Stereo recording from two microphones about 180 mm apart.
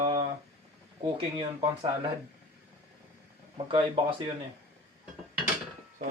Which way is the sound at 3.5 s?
30° right (ahead or behind).